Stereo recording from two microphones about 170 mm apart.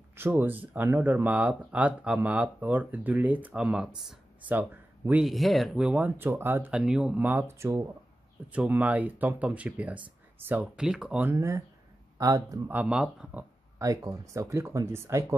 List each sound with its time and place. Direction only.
0.1 s speech: 10° right (ahead or behind)
11.3 s speech: 15° right (ahead or behind)
12.7 s speech: 5° right (ahead or behind)